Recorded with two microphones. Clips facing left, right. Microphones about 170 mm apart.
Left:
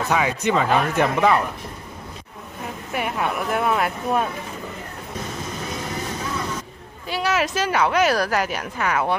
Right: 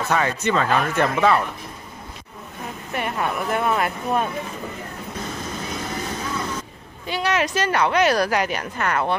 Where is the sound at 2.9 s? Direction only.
5° left (ahead or behind).